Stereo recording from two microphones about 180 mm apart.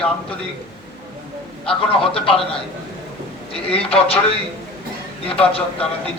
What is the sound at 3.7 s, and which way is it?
Speech, 30° left (ahead or behind).